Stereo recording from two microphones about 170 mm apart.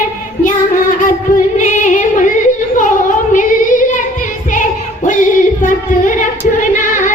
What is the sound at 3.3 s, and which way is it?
Female singing, 50° left (ahead or behind).